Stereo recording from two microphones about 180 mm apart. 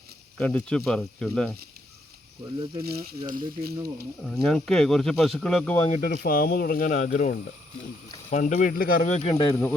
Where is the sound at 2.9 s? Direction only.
55° right (ahead or behind).